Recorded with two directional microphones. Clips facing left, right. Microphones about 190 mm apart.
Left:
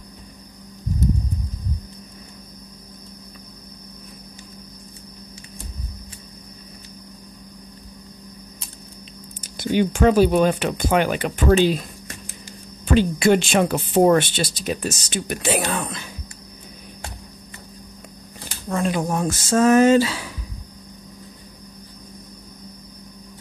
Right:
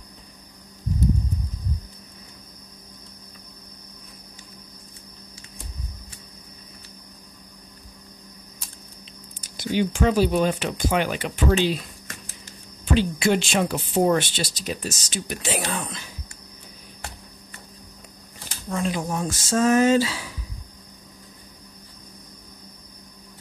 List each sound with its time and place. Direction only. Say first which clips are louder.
9.6 s speech: left 4 dB; 55° left (ahead or behind)
12.8 s speech: left 4 dB; 50° left (ahead or behind)
18.7 s speech: left 4 dB; 55° left (ahead or behind)